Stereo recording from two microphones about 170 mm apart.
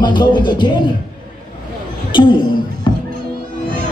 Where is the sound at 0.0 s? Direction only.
25° left (ahead or behind).